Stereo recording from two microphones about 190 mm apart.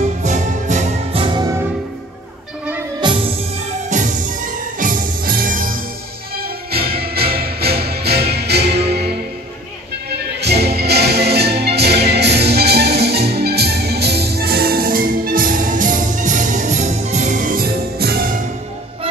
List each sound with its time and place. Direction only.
0.2 s music: 40° right (ahead or behind); by 1.6 s 20° right (ahead or behind)
3.0 s music: 25° right (ahead or behind)
3.9 s music: 45° right (ahead or behind)